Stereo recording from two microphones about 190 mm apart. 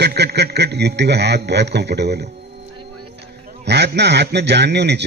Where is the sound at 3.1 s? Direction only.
65° right (ahead or behind).